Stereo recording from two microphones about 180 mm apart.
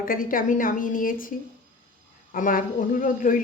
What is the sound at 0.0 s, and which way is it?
A woman's voice, 50° left (ahead or behind).